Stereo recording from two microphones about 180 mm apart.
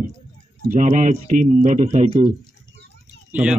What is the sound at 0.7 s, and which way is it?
Speech, 45° right (ahead or behind).